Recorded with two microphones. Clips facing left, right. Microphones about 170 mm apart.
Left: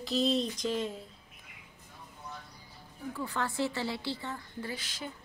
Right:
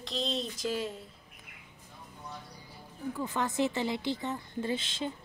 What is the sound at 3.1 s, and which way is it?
A woman's voice, 20° right (ahead or behind).